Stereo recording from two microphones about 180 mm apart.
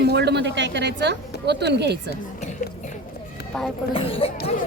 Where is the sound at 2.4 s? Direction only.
40° left (ahead or behind).